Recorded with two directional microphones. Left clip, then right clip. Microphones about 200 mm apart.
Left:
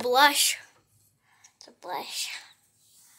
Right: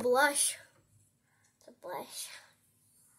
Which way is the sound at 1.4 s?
Centre (ahead or behind).